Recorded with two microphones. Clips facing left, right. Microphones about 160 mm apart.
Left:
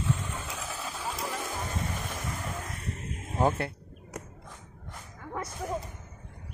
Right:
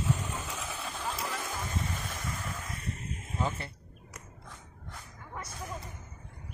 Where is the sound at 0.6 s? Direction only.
Centre (ahead or behind).